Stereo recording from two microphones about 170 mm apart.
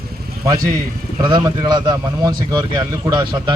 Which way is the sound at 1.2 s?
25° right (ahead or behind).